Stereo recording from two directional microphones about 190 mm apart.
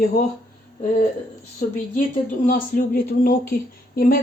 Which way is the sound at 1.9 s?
45° left (ahead or behind).